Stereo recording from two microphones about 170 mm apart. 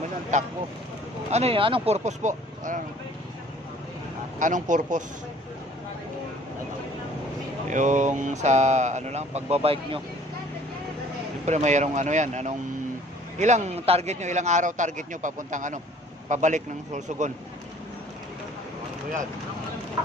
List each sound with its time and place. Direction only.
0.3 s a man's voice: 45° right (ahead or behind)
4.4 s a man's voice: 50° right (ahead or behind)
7.7 s a man's voice: 45° right (ahead or behind)
11.4 s a man's voice: 45° right (ahead or behind)